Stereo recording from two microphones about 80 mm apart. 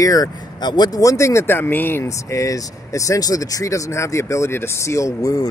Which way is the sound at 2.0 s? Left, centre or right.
Left.